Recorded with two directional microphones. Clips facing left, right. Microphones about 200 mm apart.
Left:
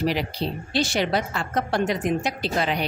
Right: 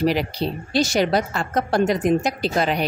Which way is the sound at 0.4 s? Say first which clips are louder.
Right 3 dB; 50° right (ahead or behind).